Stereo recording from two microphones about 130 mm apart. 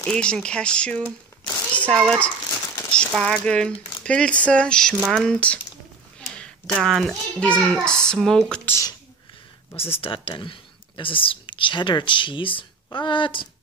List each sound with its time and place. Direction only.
0.0 s a child's voice: 10° left (ahead or behind)
2.6 s crumpling: 25° left (ahead or behind)
3.1 s a child's voice: 5° left (ahead or behind)
6.8 s a child's voice: centre (ahead or behind)
9.8 s speech: 45° left (ahead or behind)